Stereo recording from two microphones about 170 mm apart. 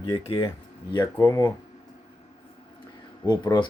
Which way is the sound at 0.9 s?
25° left (ahead or behind).